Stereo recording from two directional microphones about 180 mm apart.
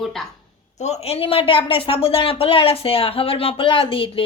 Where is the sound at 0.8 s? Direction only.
35° left (ahead or behind).